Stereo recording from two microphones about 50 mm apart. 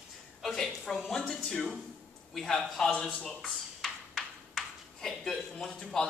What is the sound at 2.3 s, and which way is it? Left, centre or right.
Speech, centre.